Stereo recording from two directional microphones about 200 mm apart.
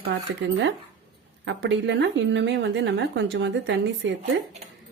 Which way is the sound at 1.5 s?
60° right (ahead or behind).